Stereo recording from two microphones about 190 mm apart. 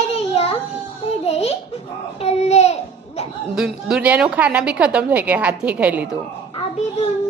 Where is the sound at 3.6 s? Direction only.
5° right (ahead or behind).